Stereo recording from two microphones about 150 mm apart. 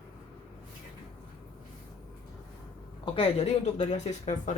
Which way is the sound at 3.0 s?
40° left (ahead or behind).